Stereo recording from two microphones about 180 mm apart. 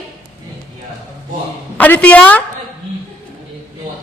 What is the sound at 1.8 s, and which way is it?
Speech, 10° left (ahead or behind).